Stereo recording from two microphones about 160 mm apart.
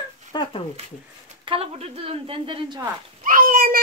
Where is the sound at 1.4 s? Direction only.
40° right (ahead or behind).